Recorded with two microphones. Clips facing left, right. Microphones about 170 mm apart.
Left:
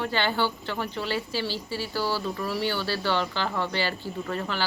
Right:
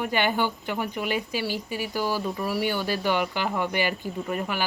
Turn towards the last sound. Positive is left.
turn(degrees=-15)  # may be behind; listen again after turning